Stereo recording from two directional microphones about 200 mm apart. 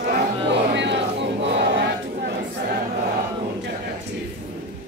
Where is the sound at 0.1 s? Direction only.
55° right (ahead or behind).